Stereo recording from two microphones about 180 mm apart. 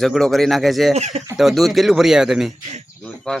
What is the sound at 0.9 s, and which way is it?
Speech, 35° right (ahead or behind).